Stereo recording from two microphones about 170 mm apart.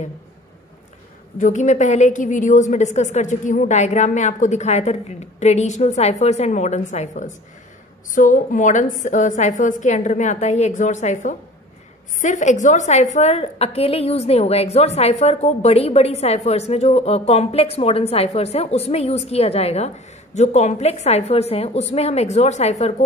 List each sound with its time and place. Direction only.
1.4 s a woman's voice: 45° left (ahead or behind)